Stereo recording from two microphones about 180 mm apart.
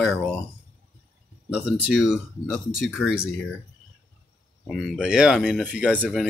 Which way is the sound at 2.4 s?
Centre (ahead or behind).